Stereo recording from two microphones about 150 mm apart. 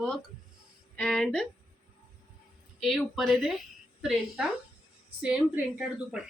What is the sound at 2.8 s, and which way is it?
A woman's voice, centre (ahead or behind).